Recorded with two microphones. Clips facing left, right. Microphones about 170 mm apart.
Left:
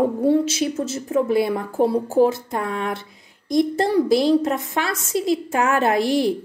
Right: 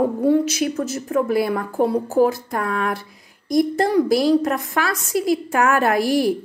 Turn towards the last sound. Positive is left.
turn(degrees=25)  # may be behind; listen again after turning